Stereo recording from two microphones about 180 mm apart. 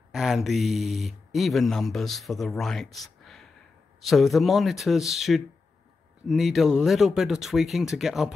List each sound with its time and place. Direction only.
0.1 s speech: centre (ahead or behind)